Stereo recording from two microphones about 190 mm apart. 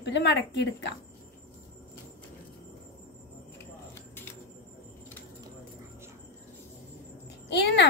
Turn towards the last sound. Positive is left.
turn(degrees=60)  # may be behind; listen again after turning